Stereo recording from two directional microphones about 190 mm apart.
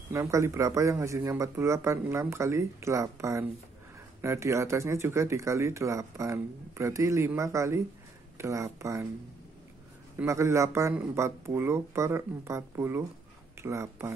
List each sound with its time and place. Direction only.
0.1 s speech: 15° right (ahead or behind)
10.1 s speech: 15° right (ahead or behind)